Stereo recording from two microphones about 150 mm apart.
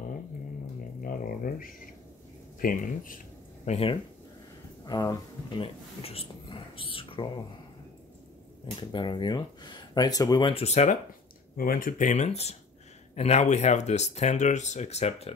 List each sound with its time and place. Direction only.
1.0 s a sound: 70° left (ahead or behind)
2.6 s speech: 65° left (ahead or behind)
3.6 s speech: 40° left (ahead or behind)
4.8 s speech: 25° left (ahead or behind)
5.6 s speech: 40° left (ahead or behind)
8.9 s speech: 30° left (ahead or behind)
10.5 s speech: 45° left (ahead or behind)
11.5 s speech: 70° left (ahead or behind); by 15.3 s 45° left (ahead or behind)